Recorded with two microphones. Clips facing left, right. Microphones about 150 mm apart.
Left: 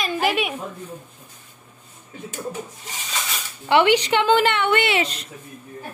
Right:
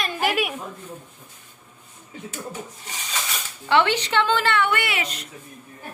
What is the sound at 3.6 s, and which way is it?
Speech, 15° left (ahead or behind).